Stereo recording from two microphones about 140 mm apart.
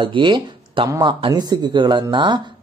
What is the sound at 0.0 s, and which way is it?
Speech, 35° right (ahead or behind).